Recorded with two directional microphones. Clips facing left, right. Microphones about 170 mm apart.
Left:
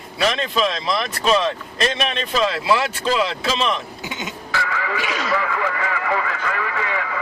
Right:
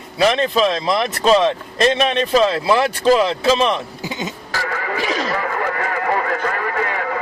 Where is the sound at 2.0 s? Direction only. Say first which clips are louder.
Right 6 dB; 40° right (ahead or behind).